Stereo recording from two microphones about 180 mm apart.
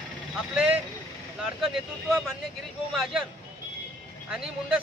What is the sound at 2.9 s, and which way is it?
Speech, centre (ahead or behind).